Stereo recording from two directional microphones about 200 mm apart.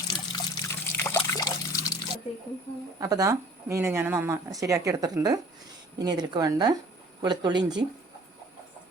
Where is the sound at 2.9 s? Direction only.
15° right (ahead or behind).